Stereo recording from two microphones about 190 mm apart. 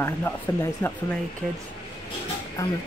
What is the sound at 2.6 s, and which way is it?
Speech, 20° left (ahead or behind).